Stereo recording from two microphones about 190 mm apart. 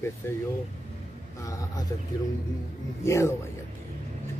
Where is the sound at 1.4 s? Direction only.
15° left (ahead or behind).